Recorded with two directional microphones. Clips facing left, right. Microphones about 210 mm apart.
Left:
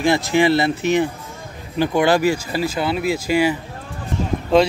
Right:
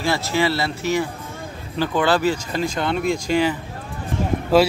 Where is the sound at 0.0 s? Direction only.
15° left (ahead or behind).